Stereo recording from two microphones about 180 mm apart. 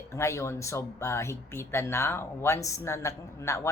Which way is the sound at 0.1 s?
15° left (ahead or behind).